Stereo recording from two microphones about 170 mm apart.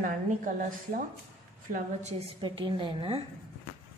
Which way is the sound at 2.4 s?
30° right (ahead or behind).